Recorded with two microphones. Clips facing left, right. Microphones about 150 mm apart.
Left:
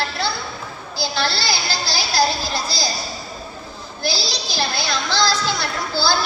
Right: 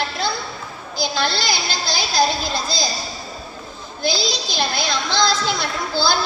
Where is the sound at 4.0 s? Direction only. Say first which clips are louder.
Right 3 dB; 20° right (ahead or behind).